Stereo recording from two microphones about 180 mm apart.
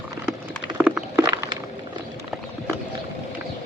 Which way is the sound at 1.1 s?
20° right (ahead or behind).